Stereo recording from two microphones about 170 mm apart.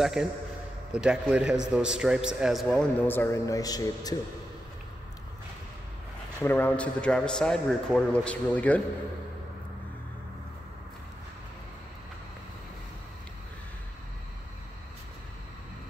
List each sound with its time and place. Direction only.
0.0 s a man's voice: 5° right (ahead or behind); by 4.2 s 20° left (ahead or behind)
6.4 s a man's voice: 10° left (ahead or behind)